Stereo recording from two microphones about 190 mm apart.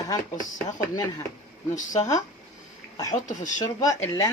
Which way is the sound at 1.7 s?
40° left (ahead or behind).